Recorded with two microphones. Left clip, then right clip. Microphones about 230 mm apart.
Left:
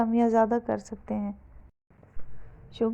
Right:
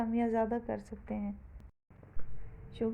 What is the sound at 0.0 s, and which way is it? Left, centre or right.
A woman's voice, left.